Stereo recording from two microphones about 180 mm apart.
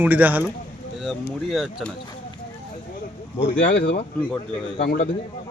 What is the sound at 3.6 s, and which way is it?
Speech, 55° left (ahead or behind).